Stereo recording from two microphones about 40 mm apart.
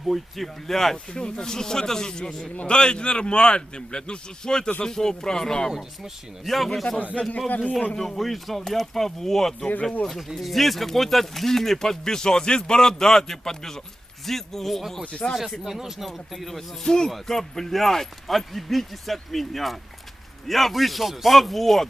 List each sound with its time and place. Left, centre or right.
0.1 s speech: centre
1.1 s a man's voice: centre
6.4 s speech: centre
7.1 s speech: left
7.9 s speech: centre
15.2 s speech: left
15.6 s speech: centre
16.8 s speech: centre